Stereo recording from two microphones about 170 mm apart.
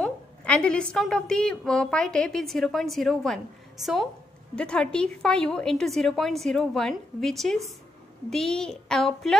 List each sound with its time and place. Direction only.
0.0 s a woman's voice: 5° left (ahead or behind)